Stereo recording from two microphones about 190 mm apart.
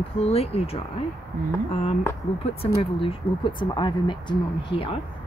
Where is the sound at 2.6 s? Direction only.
30° left (ahead or behind).